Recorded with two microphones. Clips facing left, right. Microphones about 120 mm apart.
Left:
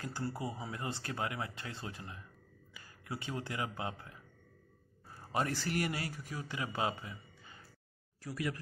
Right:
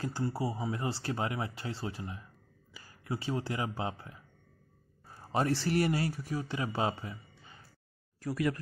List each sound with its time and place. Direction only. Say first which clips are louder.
0.0 s a man's voice: right 5 dB; 25° right (ahead or behind)
5.6 s speech: right 7 dB; 30° right (ahead or behind)
8.2 s speech: right 7 dB; 55° right (ahead or behind)